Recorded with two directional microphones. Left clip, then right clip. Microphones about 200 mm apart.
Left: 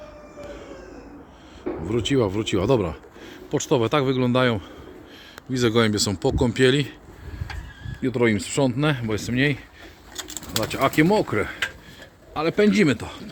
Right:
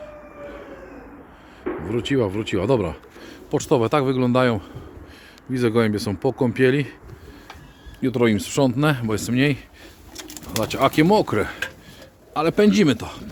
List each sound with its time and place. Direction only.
1.9 s speech: 5° right (ahead or behind)
8.0 s speech: 15° right (ahead or behind)